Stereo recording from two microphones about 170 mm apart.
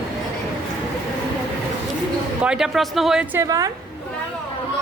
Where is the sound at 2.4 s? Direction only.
5° right (ahead or behind).